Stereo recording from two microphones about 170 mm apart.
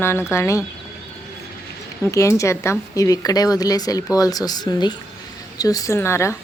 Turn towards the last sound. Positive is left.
turn(degrees=15)  # may be behind; listen again after turning